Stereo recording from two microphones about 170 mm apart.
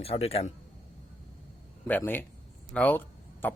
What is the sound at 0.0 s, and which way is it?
Speech, 35° left (ahead or behind).